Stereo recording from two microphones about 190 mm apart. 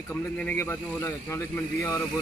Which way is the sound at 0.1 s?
10° left (ahead or behind).